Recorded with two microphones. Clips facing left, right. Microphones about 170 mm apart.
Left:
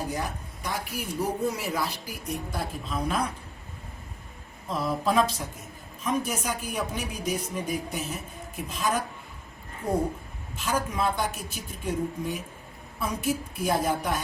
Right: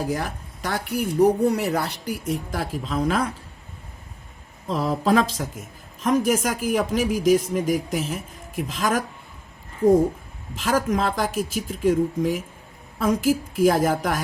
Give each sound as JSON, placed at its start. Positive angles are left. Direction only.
{"t": 0.1, "sound": "speech", "side_deg": -90}
{"t": 4.9, "sound": "a man's voice", "side_deg": -90}
{"t": 10.5, "sound": "a man's voice", "side_deg": -90}